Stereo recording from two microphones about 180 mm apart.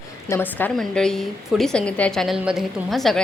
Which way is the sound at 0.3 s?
10° left (ahead or behind).